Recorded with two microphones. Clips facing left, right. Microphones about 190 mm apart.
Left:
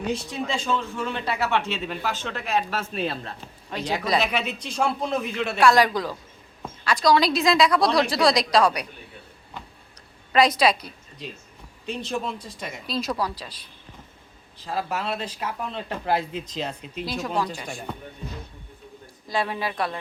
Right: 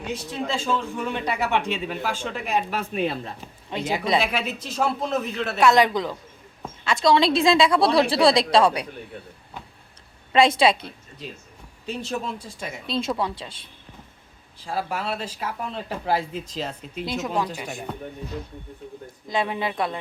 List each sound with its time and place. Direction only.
0.1 s a man's voice: 10° left (ahead or behind)
0.4 s a man's voice: 5° right (ahead or behind)
5.5 s a woman's voice: 20° right (ahead or behind)
10.3 s a woman's voice: 25° right (ahead or behind)
11.9 s speech: 5° right (ahead or behind)
12.9 s a woman's voice: 25° right (ahead or behind)
14.6 s speech: 10° right (ahead or behind)
19.0 s a woman's voice: 20° right (ahead or behind)